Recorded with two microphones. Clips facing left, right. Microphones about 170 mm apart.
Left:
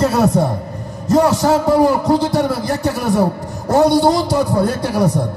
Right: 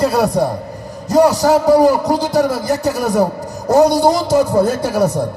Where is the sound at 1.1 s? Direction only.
20° right (ahead or behind).